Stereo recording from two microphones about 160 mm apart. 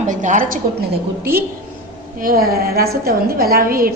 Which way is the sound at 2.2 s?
65° right (ahead or behind).